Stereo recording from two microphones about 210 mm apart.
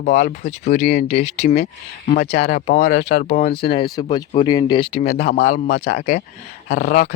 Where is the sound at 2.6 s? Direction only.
40° left (ahead or behind).